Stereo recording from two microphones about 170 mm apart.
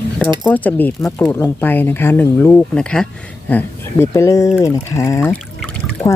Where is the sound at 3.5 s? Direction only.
15° left (ahead or behind).